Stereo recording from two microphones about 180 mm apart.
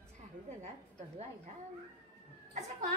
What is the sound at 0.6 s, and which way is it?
Speech, 35° right (ahead or behind).